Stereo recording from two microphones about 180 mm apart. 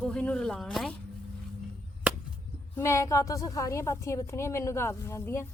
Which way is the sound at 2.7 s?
15° left (ahead or behind).